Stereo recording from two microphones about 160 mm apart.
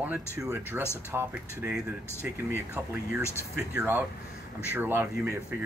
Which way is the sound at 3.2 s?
15° left (ahead or behind).